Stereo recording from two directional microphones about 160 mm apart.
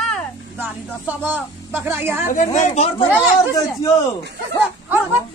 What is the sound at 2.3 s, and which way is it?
Speech, 50° left (ahead or behind).